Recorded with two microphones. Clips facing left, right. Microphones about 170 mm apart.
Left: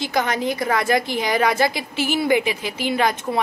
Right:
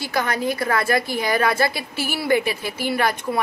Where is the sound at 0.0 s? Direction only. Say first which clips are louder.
Left 1 dB; 20° left (ahead or behind).